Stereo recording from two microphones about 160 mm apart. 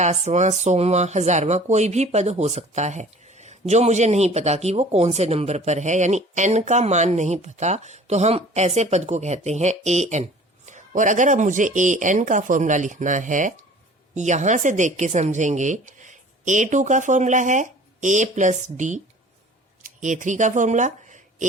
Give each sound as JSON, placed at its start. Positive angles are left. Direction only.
{"t": 0.0, "sound": "speech", "side_deg": -45}